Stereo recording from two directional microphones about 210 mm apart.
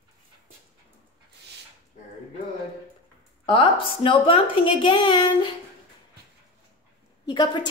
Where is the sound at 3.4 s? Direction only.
25° left (ahead or behind).